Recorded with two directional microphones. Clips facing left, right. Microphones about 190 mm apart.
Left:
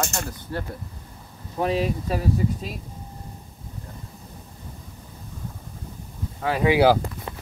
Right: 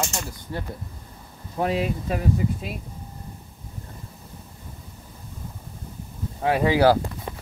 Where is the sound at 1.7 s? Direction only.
35° left (ahead or behind).